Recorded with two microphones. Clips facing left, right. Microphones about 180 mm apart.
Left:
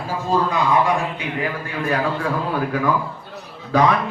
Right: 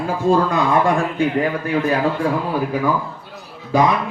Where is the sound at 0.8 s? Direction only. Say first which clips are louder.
Right 5 dB; 50° right (ahead or behind).